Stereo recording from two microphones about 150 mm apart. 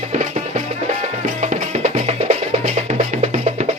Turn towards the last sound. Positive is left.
turn(degrees=-45)  # may be behind; listen again after turning